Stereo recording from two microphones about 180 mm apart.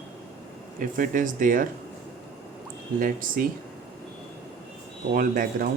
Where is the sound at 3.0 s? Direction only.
50° right (ahead or behind).